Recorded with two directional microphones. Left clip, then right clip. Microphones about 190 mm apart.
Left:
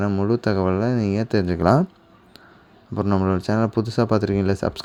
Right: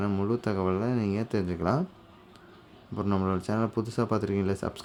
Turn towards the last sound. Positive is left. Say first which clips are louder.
# left 8 dB
turn(degrees=30)  # may be behind; listen again after turning